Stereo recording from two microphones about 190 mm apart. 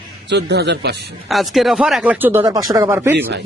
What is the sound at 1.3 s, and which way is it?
Speech, centre (ahead or behind).